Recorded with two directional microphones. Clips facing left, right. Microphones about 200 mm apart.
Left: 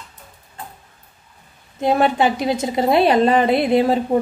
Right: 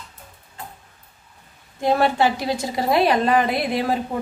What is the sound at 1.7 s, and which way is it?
A woman's voice, 20° left (ahead or behind).